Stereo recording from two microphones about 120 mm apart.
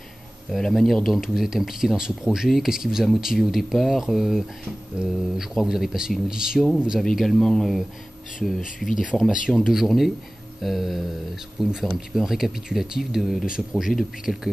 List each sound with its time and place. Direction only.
0.5 s speech: 5° left (ahead or behind)